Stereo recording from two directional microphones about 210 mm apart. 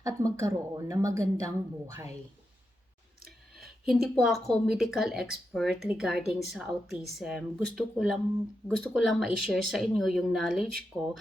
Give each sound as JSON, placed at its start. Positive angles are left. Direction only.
{"t": 0.0, "sound": "speech", "side_deg": -15}
{"t": 3.6, "sound": "a sound", "side_deg": 0}
{"t": 4.2, "sound": "speech", "side_deg": 0}
{"t": 10.9, "sound": "speech", "side_deg": -10}